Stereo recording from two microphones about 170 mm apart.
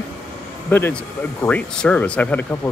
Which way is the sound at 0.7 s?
15° left (ahead or behind).